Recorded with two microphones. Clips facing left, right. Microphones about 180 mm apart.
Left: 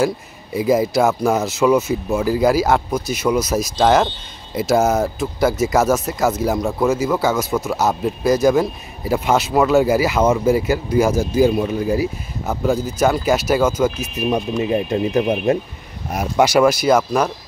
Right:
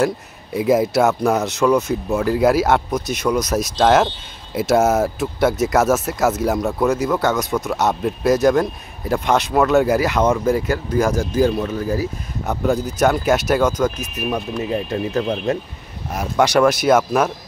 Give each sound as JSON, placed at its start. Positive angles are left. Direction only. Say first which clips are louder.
{"t": 0.0, "sound": "speech", "louder": "even", "side_deg": 0}
{"t": 12.4, "sound": "speech", "louder": "even", "side_deg": 0}